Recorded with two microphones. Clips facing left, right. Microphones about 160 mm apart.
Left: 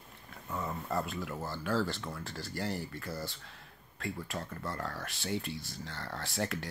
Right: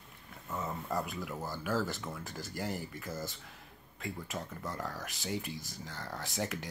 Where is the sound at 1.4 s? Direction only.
15° right (ahead or behind).